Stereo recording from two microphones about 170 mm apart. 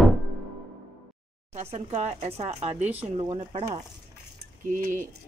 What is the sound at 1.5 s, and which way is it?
Speech, 40° right (ahead or behind).